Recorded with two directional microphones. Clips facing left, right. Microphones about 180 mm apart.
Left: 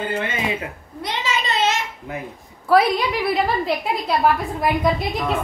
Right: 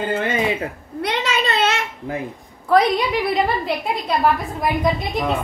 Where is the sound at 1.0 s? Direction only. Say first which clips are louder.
Right 3 dB; 60° right (ahead or behind).